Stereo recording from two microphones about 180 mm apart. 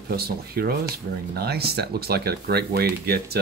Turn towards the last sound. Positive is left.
turn(degrees=-60)  # may be behind; listen again after turning